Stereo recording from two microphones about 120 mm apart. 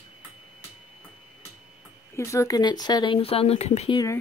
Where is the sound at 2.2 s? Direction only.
25° left (ahead or behind); by 3.8 s 60° left (ahead or behind).